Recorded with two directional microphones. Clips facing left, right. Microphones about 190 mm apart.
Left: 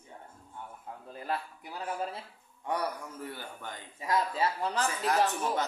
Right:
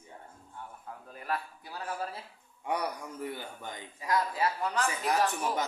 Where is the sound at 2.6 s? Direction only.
15° right (ahead or behind).